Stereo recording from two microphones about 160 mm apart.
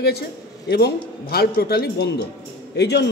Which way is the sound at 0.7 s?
90° left.